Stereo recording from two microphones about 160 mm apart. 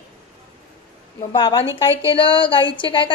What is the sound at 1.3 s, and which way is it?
A woman's voice, 25° left (ahead or behind).